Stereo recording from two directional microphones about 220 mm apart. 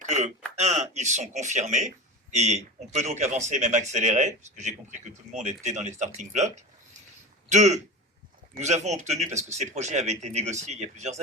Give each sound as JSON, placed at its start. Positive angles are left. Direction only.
{"t": 0.0, "sound": "a man's voice", "side_deg": -30}
{"t": 7.5, "sound": "a man's voice", "side_deg": -30}